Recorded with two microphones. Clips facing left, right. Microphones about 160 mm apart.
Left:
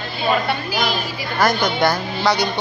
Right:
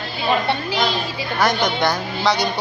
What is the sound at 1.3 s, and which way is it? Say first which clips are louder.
A woman's voice: left 1 dB; centre (ahead or behind).